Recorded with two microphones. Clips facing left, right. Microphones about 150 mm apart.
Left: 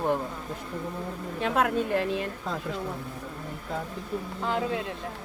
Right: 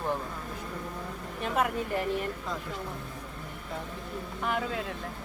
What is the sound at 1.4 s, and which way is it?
Speech, 85° left.